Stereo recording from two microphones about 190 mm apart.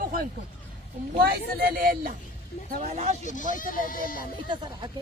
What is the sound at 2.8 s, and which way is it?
Speech, 35° right (ahead or behind).